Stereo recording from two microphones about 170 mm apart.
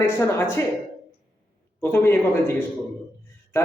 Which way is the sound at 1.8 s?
15° left (ahead or behind).